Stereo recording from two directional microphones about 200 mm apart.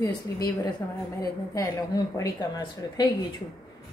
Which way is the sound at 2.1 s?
20° left (ahead or behind).